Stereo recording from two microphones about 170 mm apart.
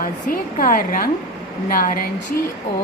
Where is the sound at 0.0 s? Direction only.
55° left (ahead or behind).